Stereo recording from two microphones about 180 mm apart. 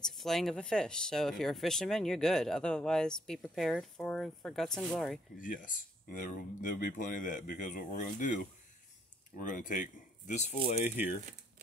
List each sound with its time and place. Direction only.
0.1 s speech: centre (ahead or behind)
5.4 s speech: 50° left (ahead or behind)
9.4 s speech: 45° left (ahead or behind)